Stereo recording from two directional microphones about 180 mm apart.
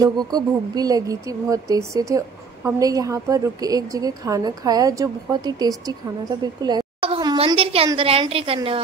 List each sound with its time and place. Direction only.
0.0 s a woman's voice: 20° right (ahead or behind)